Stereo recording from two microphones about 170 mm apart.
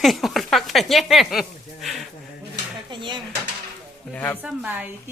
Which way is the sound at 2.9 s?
30° right (ahead or behind).